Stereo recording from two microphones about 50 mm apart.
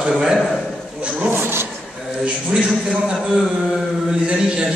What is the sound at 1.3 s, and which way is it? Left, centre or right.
Speech, right.